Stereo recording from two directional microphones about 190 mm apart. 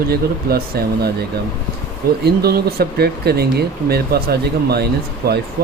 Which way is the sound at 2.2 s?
55° right (ahead or behind).